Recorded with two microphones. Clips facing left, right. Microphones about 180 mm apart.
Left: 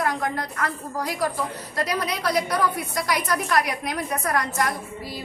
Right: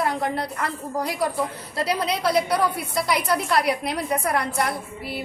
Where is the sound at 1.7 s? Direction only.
25° right (ahead or behind).